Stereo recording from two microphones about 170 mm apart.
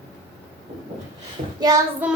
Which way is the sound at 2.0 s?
10° right (ahead or behind).